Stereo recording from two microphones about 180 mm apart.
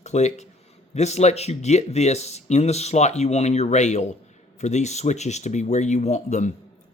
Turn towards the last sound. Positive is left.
turn(degrees=40)  # may be behind; listen again after turning